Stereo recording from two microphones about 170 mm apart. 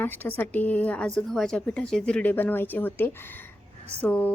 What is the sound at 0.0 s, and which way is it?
A woman's voice, 10° left (ahead or behind).